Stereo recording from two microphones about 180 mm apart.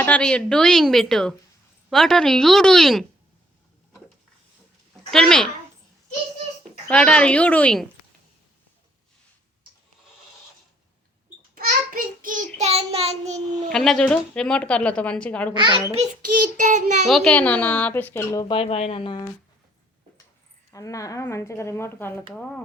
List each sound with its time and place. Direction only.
0.0 s speech: 5° left (ahead or behind)
5.1 s speech: 5° left (ahead or behind)
6.8 s speech: 5° left (ahead or behind)
11.5 s child singing: 50° right (ahead or behind)
12.5 s child singing: 35° right (ahead or behind)
13.7 s speech: 5° left (ahead or behind)
16.0 s a child's voice: 45° right (ahead or behind)
17.1 s speech: 5° left (ahead or behind)
18.4 s speech: 30° left (ahead or behind)
20.7 s speech: 20° left (ahead or behind)